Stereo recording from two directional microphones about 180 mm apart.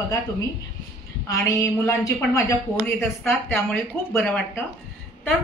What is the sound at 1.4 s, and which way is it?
A woman's voice, 15° left (ahead or behind).